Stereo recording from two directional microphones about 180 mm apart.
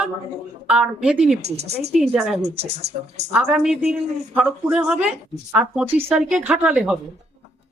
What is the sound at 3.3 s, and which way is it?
Speech, 5° right (ahead or behind).